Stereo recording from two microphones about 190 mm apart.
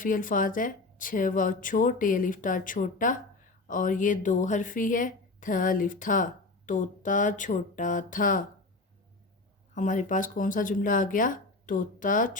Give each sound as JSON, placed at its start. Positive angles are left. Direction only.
{"t": 0.0, "sound": "a woman's voice", "side_deg": 45}
{"t": 9.7, "sound": "a woman's voice", "side_deg": 40}